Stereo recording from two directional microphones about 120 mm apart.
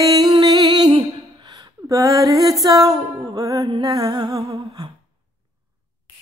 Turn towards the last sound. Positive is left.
turn(degrees=-30)  # may be behind; listen again after turning